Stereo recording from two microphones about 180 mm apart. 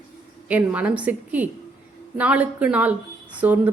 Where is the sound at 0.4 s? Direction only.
10° right (ahead or behind).